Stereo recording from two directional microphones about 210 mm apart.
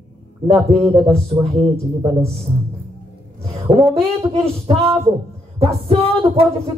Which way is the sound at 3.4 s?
25° right (ahead or behind).